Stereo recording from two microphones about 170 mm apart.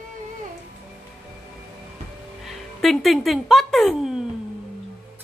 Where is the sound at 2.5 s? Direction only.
Centre (ahead or behind).